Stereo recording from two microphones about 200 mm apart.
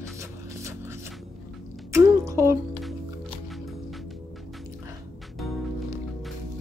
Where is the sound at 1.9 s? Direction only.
15° right (ahead or behind).